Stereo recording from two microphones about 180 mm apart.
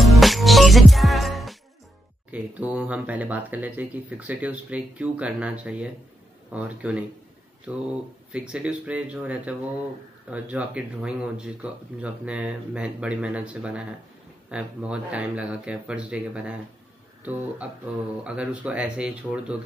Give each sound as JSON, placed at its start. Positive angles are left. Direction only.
{"t": 0.0, "sound": "music", "side_deg": 0}
{"t": 2.3, "sound": "speech", "side_deg": -10}
{"t": 8.3, "sound": "speech", "side_deg": -5}